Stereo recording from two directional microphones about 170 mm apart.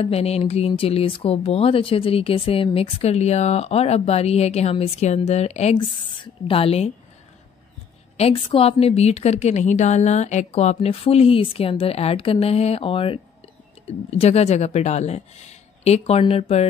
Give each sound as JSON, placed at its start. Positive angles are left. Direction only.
{"t": 0.0, "sound": "speech", "side_deg": 35}
{"t": 8.2, "sound": "speech", "side_deg": 35}